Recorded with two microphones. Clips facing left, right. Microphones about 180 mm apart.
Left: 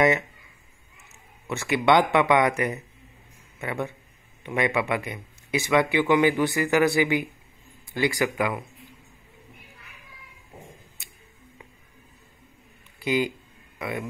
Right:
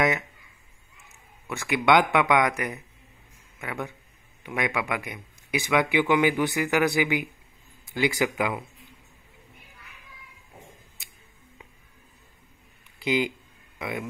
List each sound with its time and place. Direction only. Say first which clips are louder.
1.5 s speech: left 1 dB; 10° right (ahead or behind)
13.0 s a man's voice: left 1 dB; 15° right (ahead or behind)